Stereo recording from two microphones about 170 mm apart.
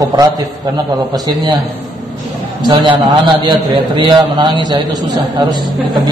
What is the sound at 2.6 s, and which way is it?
A man's voice, 30° right (ahead or behind).